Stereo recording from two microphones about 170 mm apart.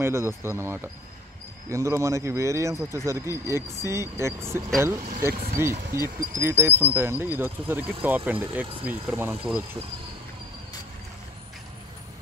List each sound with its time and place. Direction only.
0.0 s speech: 15° right (ahead or behind)
5.3 s speech: 60° right (ahead or behind)
5.6 s speech: 15° right (ahead or behind)